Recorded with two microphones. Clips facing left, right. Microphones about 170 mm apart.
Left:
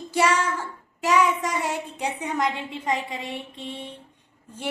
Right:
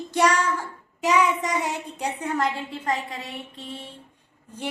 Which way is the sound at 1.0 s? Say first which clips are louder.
Even; centre (ahead or behind).